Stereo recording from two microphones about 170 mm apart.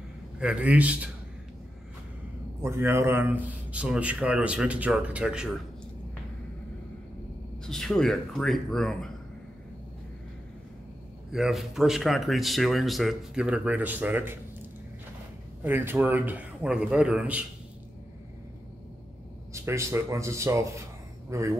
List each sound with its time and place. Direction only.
0.4 s a man's voice: 5° right (ahead or behind)
2.6 s a man's voice: 15° right (ahead or behind)
7.6 s speech: 5° left (ahead or behind)
11.3 s speech: centre (ahead or behind)
15.6 s a man's voice: 10° right (ahead or behind)
19.5 s a man's voice: 15° right (ahead or behind)